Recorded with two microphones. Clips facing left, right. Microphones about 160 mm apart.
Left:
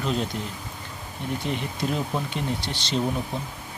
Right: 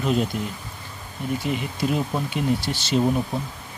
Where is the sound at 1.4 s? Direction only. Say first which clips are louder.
Right 2 dB; 5° right (ahead or behind).